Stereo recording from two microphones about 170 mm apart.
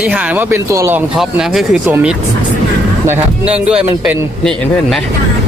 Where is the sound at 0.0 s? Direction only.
10° right (ahead or behind).